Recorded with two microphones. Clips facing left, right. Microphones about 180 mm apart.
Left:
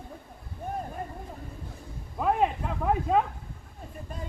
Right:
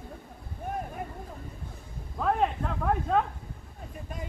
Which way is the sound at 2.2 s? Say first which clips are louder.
Left 1 dB; 10° left (ahead or behind).